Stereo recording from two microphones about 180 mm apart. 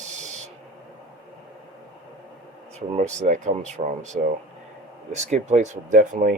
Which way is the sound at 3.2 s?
45° right (ahead or behind).